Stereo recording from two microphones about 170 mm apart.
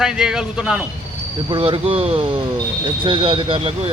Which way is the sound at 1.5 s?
30° right (ahead or behind).